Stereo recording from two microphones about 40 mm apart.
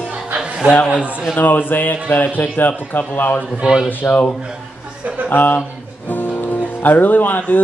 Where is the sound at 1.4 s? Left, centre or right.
Left.